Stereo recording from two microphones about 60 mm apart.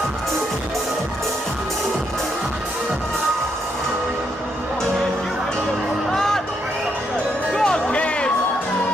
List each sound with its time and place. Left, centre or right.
6.1 s music: centre
7.5 s music: centre